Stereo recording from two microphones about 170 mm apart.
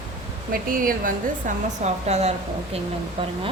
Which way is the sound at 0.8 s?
55° right (ahead or behind).